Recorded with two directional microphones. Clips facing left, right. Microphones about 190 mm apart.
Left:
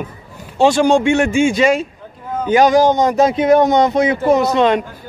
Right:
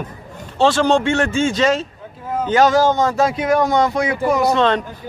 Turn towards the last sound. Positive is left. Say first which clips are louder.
# left 3 dB
turn(degrees=15)  # may be behind; listen again after turning